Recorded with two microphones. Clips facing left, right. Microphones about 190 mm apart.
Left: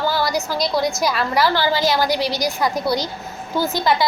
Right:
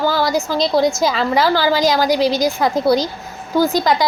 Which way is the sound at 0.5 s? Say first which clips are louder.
Right 7 dB; 25° right (ahead or behind).